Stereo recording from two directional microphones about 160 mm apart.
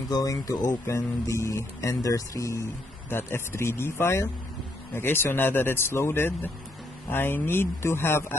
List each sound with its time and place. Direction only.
0.1 s a man's voice: 20° left (ahead or behind)